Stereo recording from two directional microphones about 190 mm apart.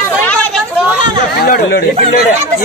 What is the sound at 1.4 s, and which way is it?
Speech, 55° left (ahead or behind).